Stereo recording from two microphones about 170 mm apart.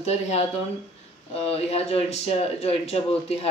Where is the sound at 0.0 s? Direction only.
40° left (ahead or behind).